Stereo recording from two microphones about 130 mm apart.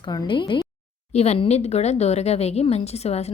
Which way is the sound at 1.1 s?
55° left (ahead or behind).